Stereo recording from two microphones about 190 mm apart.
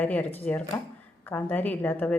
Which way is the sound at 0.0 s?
10° left (ahead or behind).